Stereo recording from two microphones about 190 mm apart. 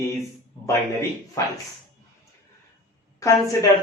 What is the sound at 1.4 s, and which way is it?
Speech, 15° left (ahead or behind).